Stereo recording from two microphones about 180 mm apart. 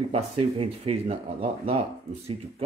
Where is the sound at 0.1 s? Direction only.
30° right (ahead or behind).